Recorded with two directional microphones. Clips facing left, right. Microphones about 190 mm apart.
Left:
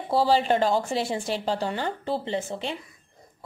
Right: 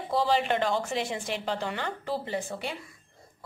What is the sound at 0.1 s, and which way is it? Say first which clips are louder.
Speech: left 4 dB; 30° left (ahead or behind).